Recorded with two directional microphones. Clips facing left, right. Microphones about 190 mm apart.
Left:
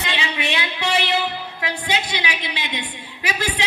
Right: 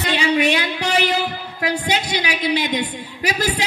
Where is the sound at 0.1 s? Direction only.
40° right (ahead or behind).